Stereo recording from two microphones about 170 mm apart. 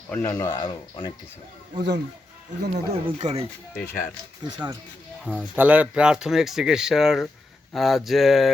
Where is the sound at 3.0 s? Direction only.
40° right (ahead or behind).